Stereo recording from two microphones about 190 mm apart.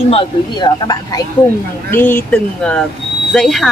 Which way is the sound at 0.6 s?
20° left (ahead or behind).